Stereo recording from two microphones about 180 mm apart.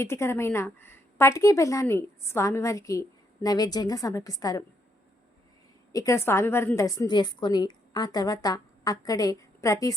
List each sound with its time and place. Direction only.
0.0 s speech: 15° left (ahead or behind)
5.9 s a woman's voice: 20° left (ahead or behind)